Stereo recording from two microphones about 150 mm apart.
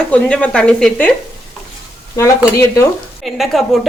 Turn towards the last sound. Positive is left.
turn(degrees=0)  # may be behind; listen again after turning